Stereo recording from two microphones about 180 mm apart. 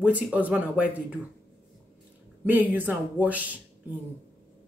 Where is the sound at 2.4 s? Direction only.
10° right (ahead or behind).